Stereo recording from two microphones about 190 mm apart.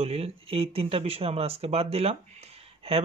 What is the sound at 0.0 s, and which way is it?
Speech, 30° right (ahead or behind).